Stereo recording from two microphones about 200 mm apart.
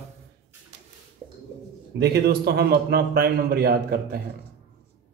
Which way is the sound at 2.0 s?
50° right (ahead or behind).